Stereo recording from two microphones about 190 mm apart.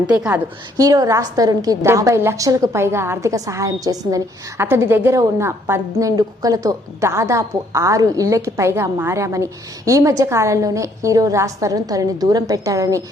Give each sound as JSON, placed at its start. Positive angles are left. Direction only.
{"t": 0.1, "sound": "a woman's voice", "side_deg": -5}